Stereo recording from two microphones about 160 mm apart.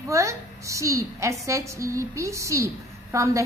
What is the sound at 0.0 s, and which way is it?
A woman's voice, 20° right (ahead or behind).